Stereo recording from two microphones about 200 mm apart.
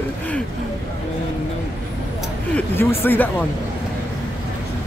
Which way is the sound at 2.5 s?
10° left (ahead or behind).